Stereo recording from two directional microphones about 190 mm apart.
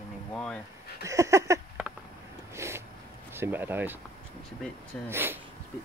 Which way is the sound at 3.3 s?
10° right (ahead or behind).